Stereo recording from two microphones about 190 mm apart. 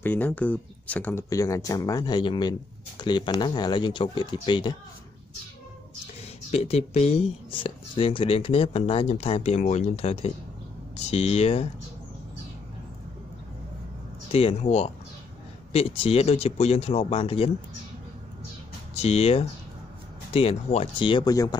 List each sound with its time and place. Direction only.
0.0 s speech: 10° left (ahead or behind)
6.5 s speech: 35° left (ahead or behind)
14.3 s speech: 30° left (ahead or behind)
18.9 s speech: 35° left (ahead or behind)